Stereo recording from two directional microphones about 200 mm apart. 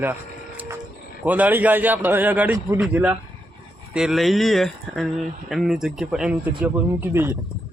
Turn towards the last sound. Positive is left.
turn(degrees=-10)  # may be behind; listen again after turning